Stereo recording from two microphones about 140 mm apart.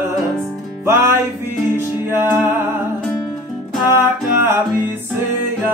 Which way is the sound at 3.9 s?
15° right (ahead or behind).